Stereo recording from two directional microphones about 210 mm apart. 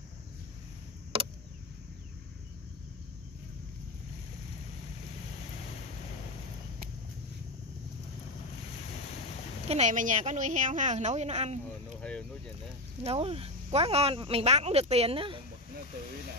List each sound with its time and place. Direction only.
9.7 s a woman's voice: 35° right (ahead or behind)
12.0 s a sound: 5° left (ahead or behind)
13.0 s speech: 30° right (ahead or behind)